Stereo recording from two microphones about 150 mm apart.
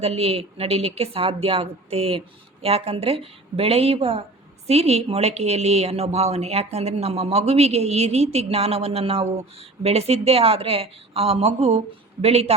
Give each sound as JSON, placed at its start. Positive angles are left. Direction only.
{"t": 0.0, "sound": "a woman's voice", "side_deg": -40}